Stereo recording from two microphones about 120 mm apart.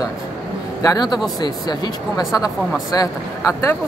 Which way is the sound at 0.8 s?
35° left (ahead or behind).